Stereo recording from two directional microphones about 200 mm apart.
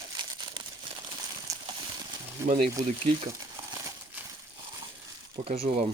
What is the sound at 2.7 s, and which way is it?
Crumpling, 20° right (ahead or behind).